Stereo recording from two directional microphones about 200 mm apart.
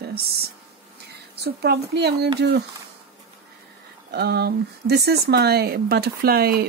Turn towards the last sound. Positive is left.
turn(degrees=-50)  # may be behind; listen again after turning